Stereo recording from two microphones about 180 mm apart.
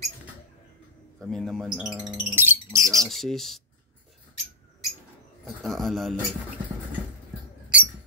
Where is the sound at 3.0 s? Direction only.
Centre (ahead or behind).